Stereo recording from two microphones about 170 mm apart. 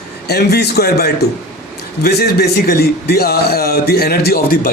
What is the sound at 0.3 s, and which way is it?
A man's voice, 70° left (ahead or behind).